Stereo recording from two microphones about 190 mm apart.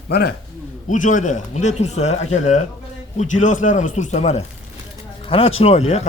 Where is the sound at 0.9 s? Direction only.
40° left (ahead or behind).